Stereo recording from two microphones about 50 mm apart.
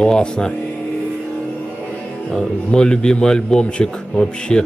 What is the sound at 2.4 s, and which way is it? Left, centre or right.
A man's voice, centre.